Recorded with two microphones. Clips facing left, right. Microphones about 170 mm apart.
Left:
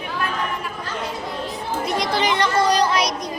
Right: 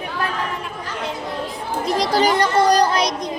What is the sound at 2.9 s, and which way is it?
Child singing, 25° right (ahead or behind).